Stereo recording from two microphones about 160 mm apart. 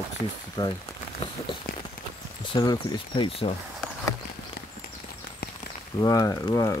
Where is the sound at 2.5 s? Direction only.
30° left (ahead or behind).